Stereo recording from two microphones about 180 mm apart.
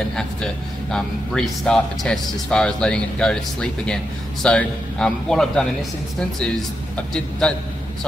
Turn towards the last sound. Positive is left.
turn(degrees=5)  # may be behind; listen again after turning